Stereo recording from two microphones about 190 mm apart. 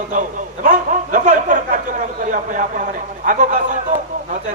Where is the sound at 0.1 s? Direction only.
40° right (ahead or behind).